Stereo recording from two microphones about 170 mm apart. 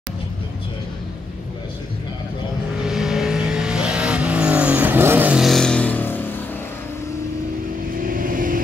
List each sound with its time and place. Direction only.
2.8 s vehicle: centre (ahead or behind)
8.1 s vehicle: 55° right (ahead or behind)